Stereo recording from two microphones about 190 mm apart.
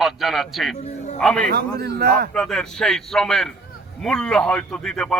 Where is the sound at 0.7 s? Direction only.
35° left (ahead or behind).